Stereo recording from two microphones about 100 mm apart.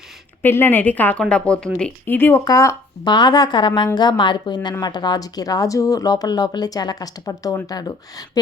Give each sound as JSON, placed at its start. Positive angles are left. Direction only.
{"t": 0.4, "sound": "speech", "side_deg": 20}
{"t": 2.0, "sound": "speech", "side_deg": 20}
{"t": 2.4, "sound": "speech", "side_deg": 35}
{"t": 3.0, "sound": "a woman's voice", "side_deg": 50}